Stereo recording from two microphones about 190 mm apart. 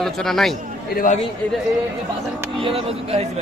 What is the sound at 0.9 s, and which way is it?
Speech, 50° left (ahead or behind).